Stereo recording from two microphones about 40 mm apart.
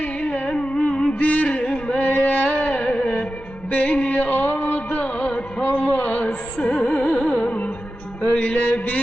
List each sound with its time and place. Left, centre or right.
0.3 s music: left
1.2 s music: left
1.6 s music: left
2.0 s a sound: left
3.0 s music: left
5.0 s music: left
5.6 s a sound: left
6.2 s music: left
8.2 s mantra: left